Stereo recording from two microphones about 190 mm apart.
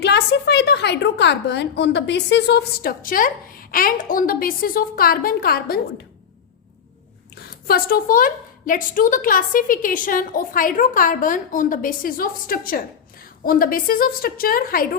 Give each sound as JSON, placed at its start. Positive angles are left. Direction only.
{"t": 0.0, "sound": "a woman's voice", "side_deg": 60}
{"t": 7.7, "sound": "a woman's voice", "side_deg": 50}